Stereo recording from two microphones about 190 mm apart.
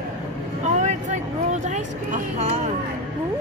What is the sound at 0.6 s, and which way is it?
Vehicle, 40° right (ahead or behind).